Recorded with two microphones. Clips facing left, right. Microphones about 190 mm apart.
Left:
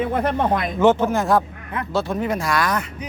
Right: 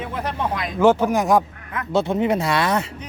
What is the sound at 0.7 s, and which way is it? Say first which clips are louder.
Speech: right 2 dB; 10° right (ahead or behind).